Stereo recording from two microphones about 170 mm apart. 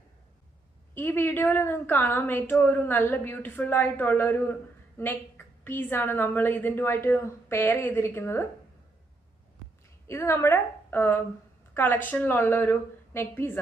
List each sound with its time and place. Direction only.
0.9 s a woman's voice: 15° left (ahead or behind)
10.1 s a woman's voice: 15° left (ahead or behind)